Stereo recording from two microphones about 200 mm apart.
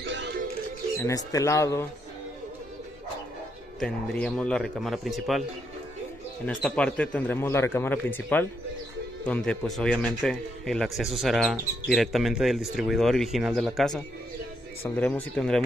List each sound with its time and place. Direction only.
0.0 s music: 60° right (ahead or behind)
0.9 s a man's voice: 15° left (ahead or behind)
3.8 s a man's voice: 5° left (ahead or behind)
6.4 s a man's voice: 5° left (ahead or behind)